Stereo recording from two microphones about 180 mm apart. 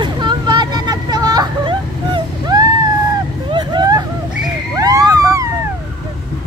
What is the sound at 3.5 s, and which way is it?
Hubbub, 25° right (ahead or behind).